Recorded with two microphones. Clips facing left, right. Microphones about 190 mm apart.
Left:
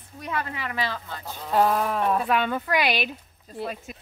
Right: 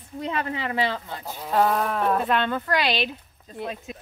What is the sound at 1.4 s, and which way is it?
Speech, centre (ahead or behind).